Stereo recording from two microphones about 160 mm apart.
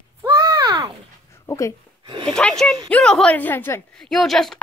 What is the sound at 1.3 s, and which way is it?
Speech, 20° left (ahead or behind).